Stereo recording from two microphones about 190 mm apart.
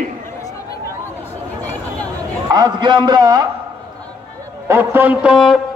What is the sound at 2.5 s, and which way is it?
A man's voice, 20° right (ahead or behind).